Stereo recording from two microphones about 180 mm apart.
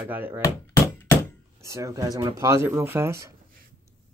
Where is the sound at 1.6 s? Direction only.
15° right (ahead or behind).